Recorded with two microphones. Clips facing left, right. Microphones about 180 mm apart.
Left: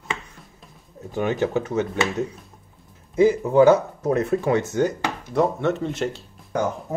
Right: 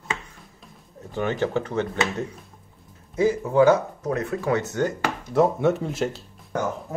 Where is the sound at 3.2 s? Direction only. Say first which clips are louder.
Left 3 dB; 25° left (ahead or behind).